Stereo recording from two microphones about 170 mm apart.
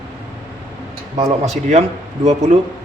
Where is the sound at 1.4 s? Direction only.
40° right (ahead or behind).